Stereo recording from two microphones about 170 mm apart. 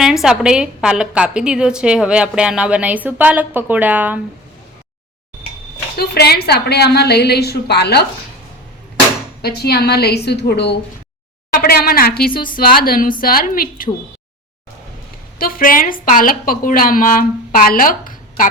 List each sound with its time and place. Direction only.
0.0 s a woman's voice: centre (ahead or behind)
6.0 s a woman's voice: 70° left (ahead or behind)
9.4 s a woman's voice: 70° left (ahead or behind)
11.6 s a woman's voice: 60° left (ahead or behind)
15.4 s a woman's voice: 60° left (ahead or behind)